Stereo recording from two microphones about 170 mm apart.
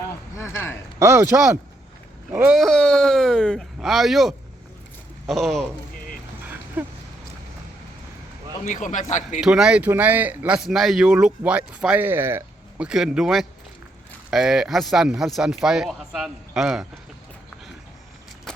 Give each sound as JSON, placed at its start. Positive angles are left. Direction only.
{"t": 0.3, "sound": "a sound", "side_deg": 15}
{"t": 0.9, "sound": "speech", "side_deg": -15}
{"t": 2.6, "sound": "speech", "side_deg": 0}
{"t": 6.8, "sound": "speech", "side_deg": -10}
{"t": 8.6, "sound": "a man's voice", "side_deg": 50}
{"t": 9.4, "sound": "speech", "side_deg": -5}
{"t": 12.9, "sound": "speech", "side_deg": -5}